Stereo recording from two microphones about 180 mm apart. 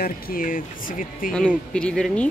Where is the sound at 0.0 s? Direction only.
55° left (ahead or behind).